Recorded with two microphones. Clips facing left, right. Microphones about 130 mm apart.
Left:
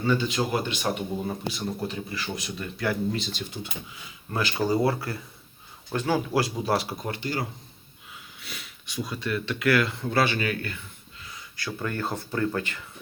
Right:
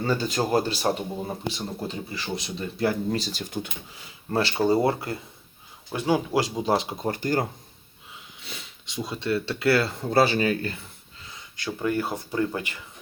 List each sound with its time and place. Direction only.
0.0 s speech: 40° right (ahead or behind)
3.1 s speech: 40° right (ahead or behind)
4.3 s speech: 30° right (ahead or behind)
5.9 s speech: 10° right (ahead or behind)
6.3 s speech: 20° right (ahead or behind)
7.1 s speech: 45° right (ahead or behind)
8.1 s speech: 25° right (ahead or behind)